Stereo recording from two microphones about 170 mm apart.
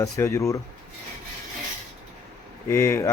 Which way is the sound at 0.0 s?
20° left (ahead or behind).